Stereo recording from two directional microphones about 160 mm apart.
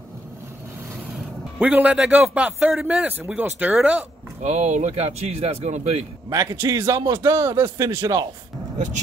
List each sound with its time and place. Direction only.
1.6 s a man's voice: 10° right (ahead or behind)
4.4 s speech: 45° right (ahead or behind)
6.3 s a man's voice: 15° right (ahead or behind)
8.7 s speech: 50° right (ahead or behind)